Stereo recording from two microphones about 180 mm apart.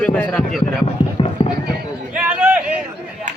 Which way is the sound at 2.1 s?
5° right (ahead or behind).